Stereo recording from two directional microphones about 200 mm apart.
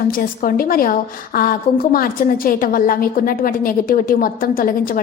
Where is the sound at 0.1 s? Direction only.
45° left (ahead or behind).